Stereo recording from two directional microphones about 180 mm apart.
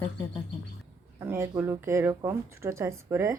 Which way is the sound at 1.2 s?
10° right (ahead or behind).